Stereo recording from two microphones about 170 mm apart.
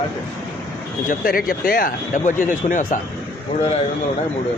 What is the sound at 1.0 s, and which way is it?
Speech, 60° left (ahead or behind).